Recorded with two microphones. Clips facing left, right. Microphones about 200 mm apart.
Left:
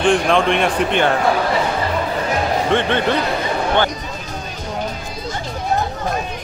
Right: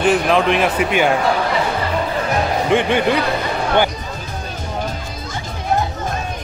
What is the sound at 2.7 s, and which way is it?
Speech, 10° right (ahead or behind).